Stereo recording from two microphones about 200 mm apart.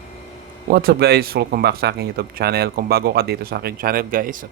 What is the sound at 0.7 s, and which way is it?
Speech, 50° right (ahead or behind).